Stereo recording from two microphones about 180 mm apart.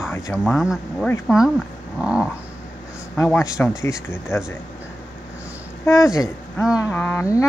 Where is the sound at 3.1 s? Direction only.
15° left (ahead or behind).